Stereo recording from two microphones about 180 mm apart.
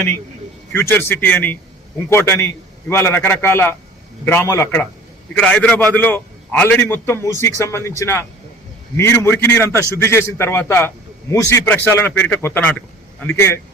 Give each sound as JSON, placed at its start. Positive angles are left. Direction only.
{"t": 0.7, "sound": "a man's voice", "side_deg": 10}